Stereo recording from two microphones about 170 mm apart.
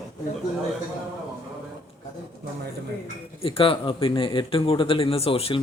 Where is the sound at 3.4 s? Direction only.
35° left (ahead or behind).